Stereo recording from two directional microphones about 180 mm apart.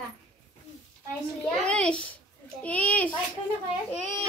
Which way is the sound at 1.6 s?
5° left (ahead or behind).